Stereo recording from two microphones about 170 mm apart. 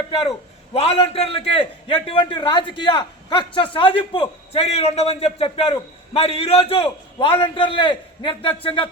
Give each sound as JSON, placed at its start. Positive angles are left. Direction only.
{"t": 0.1, "sound": "a man's voice", "side_deg": 35}